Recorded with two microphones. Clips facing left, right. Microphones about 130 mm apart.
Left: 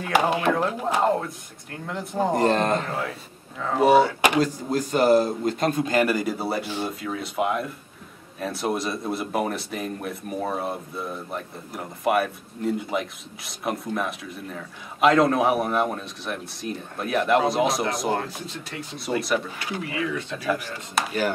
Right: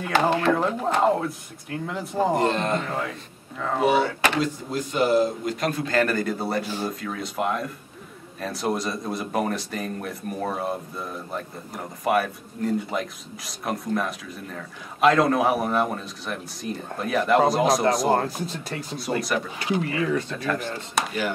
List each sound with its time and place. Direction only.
0.1 s speech: 10° left (ahead or behind)
2.4 s speech: 40° left (ahead or behind)
2.9 s speech: centre (ahead or behind)
4.0 s speech: 15° left (ahead or behind)
4.4 s a man's voice: 40° left (ahead or behind); by 18.0 s centre (ahead or behind)
18.1 s speech: 40° right (ahead or behind)
19.1 s speech: 5° right (ahead or behind)
20.0 s speech: 40° right (ahead or behind)
20.4 s speech: 10° left (ahead or behind)